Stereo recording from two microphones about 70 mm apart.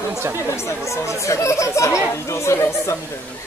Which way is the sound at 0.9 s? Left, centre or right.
Left.